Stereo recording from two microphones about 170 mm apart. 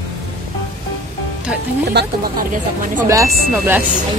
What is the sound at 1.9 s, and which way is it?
Speech, 65° right (ahead or behind).